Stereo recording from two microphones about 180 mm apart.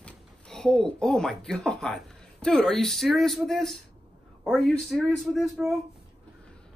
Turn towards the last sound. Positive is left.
turn(degrees=0)  # may be behind; listen again after turning